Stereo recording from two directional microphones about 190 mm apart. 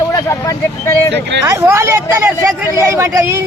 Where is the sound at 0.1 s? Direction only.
15° left (ahead or behind).